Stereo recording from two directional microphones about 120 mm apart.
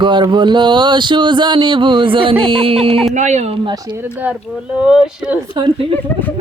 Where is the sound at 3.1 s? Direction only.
80° right.